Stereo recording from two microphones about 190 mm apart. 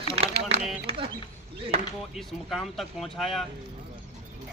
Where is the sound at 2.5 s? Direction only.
Centre (ahead or behind).